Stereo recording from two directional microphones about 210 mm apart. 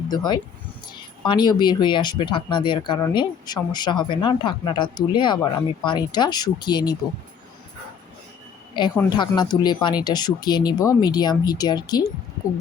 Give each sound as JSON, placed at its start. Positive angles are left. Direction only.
{"t": 0.1, "sound": "speech", "side_deg": 20}
{"t": 9.0, "sound": "speech", "side_deg": 20}